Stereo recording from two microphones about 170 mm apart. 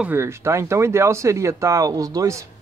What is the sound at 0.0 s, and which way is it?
Speech, 15° right (ahead or behind).